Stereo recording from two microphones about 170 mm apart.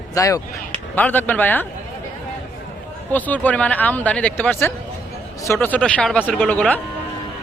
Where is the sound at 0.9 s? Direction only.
10° left (ahead or behind).